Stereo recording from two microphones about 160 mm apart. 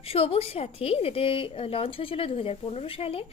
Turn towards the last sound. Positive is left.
turn(degrees=35)  # may be behind; listen again after turning